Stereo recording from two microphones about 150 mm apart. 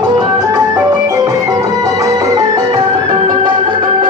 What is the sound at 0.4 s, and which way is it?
Music, 20° right (ahead or behind).